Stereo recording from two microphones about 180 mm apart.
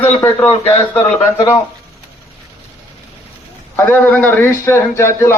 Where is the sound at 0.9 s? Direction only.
15° left (ahead or behind).